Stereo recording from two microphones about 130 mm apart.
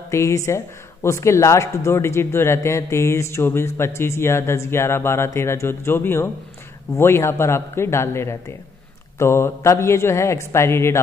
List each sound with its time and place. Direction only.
0.1 s a man's voice: 25° left (ahead or behind)